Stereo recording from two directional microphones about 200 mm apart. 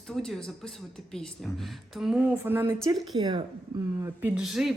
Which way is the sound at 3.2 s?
20° right (ahead or behind).